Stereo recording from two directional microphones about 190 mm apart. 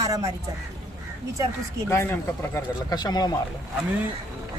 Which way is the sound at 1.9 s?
15° left (ahead or behind).